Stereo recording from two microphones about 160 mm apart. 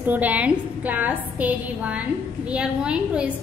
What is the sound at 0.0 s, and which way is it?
A woman's voice, 10° right (ahead or behind).